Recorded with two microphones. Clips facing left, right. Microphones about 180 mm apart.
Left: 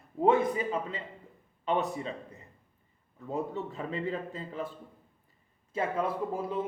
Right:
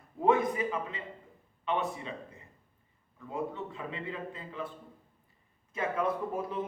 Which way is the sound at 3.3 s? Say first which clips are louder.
Left 2 dB; 40° left (ahead or behind).